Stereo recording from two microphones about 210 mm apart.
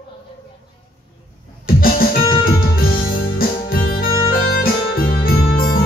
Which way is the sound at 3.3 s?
45° left (ahead or behind).